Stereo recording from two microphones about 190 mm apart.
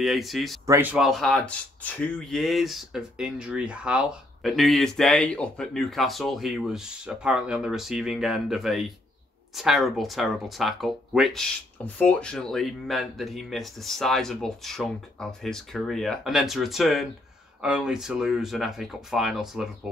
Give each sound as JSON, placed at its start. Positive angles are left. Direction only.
{"t": 0.0, "sound": "speech", "side_deg": 0}